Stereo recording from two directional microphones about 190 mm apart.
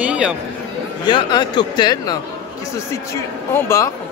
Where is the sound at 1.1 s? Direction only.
25° left (ahead or behind).